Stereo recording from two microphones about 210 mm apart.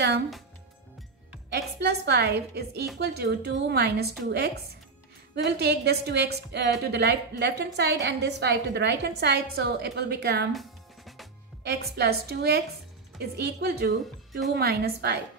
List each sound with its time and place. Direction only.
1.5 s a woman's voice: 50° right (ahead or behind)
10.5 s music: centre (ahead or behind)
11.6 s a woman's voice: 50° right (ahead or behind)